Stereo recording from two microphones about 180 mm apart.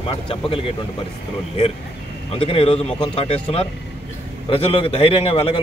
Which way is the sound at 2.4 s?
30° left (ahead or behind).